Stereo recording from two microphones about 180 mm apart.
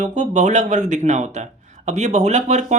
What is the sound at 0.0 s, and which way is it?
A man's voice, 40° right (ahead or behind).